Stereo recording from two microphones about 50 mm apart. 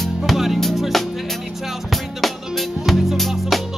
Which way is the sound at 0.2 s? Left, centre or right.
Centre.